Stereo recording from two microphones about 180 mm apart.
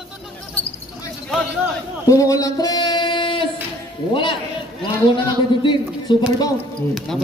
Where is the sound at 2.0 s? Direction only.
20° left (ahead or behind).